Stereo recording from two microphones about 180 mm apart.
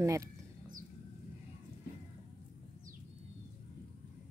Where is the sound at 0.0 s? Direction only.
15° right (ahead or behind).